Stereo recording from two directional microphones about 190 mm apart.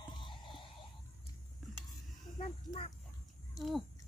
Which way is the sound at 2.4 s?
30° left (ahead or behind).